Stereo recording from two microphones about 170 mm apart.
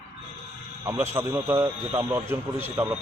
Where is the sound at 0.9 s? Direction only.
15° right (ahead or behind).